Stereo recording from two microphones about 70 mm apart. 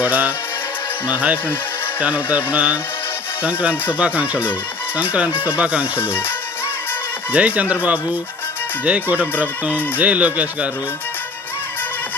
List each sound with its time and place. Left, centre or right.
0.0 s speech: right
6.0 s speech: left
7.3 s speech: right